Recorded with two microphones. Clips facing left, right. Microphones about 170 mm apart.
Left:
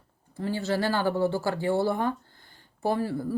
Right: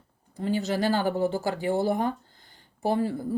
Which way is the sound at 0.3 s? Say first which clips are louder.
Right 1 dB; 15° right (ahead or behind).